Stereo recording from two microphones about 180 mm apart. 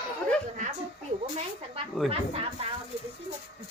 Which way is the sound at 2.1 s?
35° right (ahead or behind).